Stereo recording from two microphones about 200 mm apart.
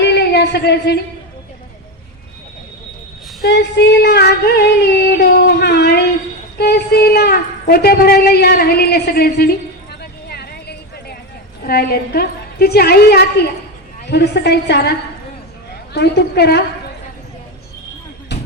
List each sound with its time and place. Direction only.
0.0 s a sound: 55° left (ahead or behind)
3.4 s female singing: 60° left (ahead or behind)
6.6 s a woman's voice: 55° left (ahead or behind)
10.0 s vehicle: 50° left (ahead or behind)
11.6 s a woman's voice: 50° left (ahead or behind)
15.9 s a woman's voice: 55° left (ahead or behind)